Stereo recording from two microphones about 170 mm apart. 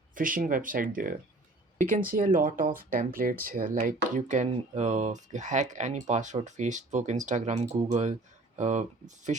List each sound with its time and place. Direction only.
0.1 s speech: 55° right (ahead or behind)